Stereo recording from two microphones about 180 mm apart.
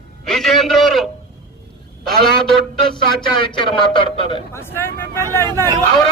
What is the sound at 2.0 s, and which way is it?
Speech, centre (ahead or behind).